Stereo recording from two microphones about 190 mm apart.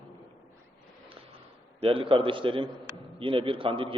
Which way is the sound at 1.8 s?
30° right (ahead or behind).